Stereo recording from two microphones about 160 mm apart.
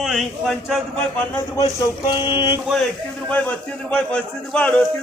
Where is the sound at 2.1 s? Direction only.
30° left (ahead or behind).